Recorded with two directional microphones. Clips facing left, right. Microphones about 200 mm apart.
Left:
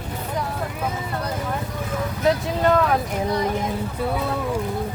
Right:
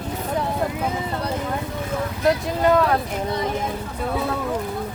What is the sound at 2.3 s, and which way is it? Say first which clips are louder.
Speech: right 1 dB; 5° right (ahead or behind).